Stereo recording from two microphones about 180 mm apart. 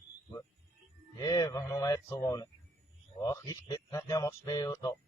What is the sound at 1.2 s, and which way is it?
A man's voice, 20° left (ahead or behind).